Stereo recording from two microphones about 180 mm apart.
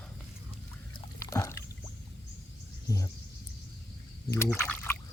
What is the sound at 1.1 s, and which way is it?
Water, 15° left (ahead or behind).